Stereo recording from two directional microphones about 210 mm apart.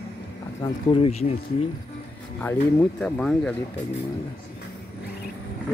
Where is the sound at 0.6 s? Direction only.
30° left (ahead or behind).